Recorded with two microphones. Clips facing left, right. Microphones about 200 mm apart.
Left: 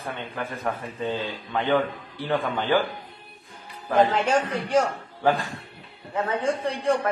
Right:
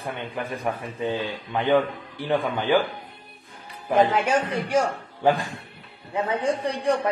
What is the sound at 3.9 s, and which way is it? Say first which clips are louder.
A man's voice: even; 10° right (ahead or behind).